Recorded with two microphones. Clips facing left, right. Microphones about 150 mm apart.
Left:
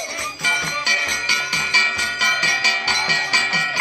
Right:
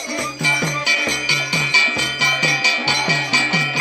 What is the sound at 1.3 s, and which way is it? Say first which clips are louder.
Music: right 3 dB; 20° right (ahead or behind).